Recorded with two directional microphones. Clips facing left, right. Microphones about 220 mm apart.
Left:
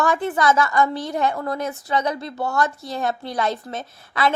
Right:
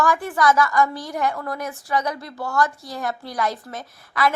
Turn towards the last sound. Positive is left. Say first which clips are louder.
# even
turn(degrees=25)  # may be behind; listen again after turning